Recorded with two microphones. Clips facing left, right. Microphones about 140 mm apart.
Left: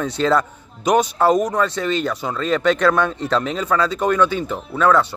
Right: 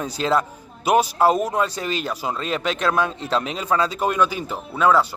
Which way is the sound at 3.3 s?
25° right (ahead or behind).